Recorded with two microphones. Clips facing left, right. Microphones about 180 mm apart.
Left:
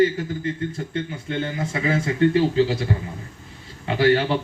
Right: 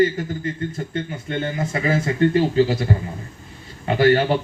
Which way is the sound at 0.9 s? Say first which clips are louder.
Right 1 dB; 50° right (ahead or behind).